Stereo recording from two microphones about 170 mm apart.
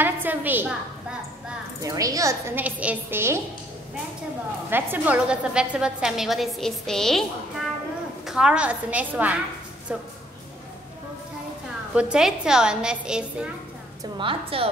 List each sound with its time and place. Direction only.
0.0 s a woman's voice: 10° right (ahead or behind)
1.8 s a woman's voice: 20° right (ahead or behind)
4.6 s a woman's voice: 10° right (ahead or behind)
8.3 s a woman's voice: 5° right (ahead or behind)
11.9 s a woman's voice: 5° right (ahead or behind)
14.1 s a woman's voice: 30° right (ahead or behind)